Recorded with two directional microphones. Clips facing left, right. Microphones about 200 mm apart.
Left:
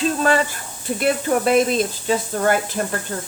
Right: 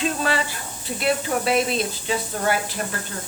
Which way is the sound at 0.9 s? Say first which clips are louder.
Left 4 dB; 50° left (ahead or behind).